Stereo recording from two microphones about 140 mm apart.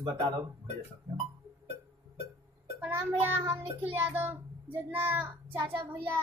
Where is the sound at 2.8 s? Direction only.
15° right (ahead or behind).